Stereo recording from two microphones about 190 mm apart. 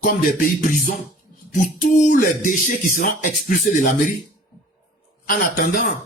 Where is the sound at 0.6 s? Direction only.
45° left (ahead or behind).